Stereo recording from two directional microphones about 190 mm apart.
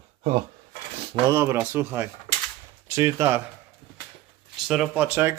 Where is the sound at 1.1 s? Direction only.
15° right (ahead or behind).